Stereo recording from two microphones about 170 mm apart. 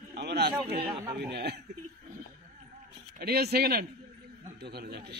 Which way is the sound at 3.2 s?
65° right (ahead or behind).